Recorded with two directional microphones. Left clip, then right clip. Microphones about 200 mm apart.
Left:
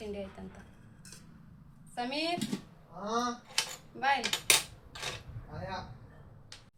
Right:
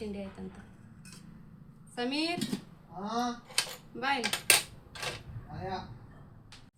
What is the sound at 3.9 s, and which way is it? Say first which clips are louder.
Speech: left 2 dB; 10° left (ahead or behind).